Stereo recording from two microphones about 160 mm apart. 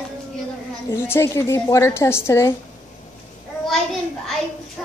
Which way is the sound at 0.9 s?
15° left (ahead or behind).